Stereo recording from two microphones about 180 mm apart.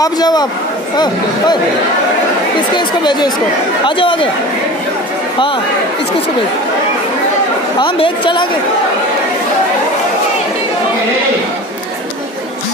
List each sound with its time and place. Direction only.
0.0 s a woman's voice: 20° left (ahead or behind)
2.8 s a woman's voice: 25° left (ahead or behind)
7.8 s a woman's voice: 30° left (ahead or behind)